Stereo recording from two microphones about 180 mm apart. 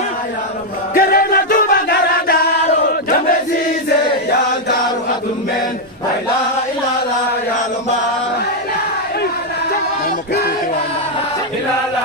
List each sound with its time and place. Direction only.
0.9 s chant: 55° left (ahead or behind)